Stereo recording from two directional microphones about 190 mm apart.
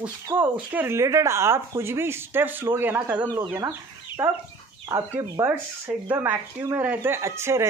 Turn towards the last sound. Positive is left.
turn(degrees=-15)  # may be behind; listen again after turning